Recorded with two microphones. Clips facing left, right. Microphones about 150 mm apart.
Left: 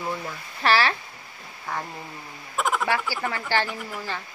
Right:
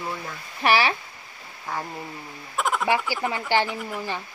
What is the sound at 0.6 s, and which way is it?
Speech, 15° right (ahead or behind).